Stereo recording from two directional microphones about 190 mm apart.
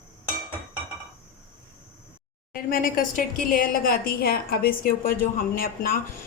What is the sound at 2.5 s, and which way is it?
A woman's voice, 50° left (ahead or behind).